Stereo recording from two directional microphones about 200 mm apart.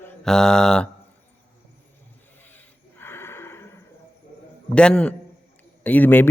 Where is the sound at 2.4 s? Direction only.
10° left (ahead or behind).